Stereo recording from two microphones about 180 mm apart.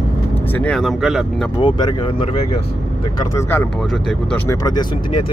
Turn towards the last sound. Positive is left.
turn(degrees=25)  # may be behind; listen again after turning